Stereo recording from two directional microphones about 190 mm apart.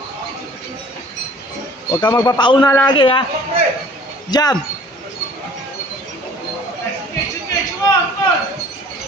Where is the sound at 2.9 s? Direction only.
25° left (ahead or behind).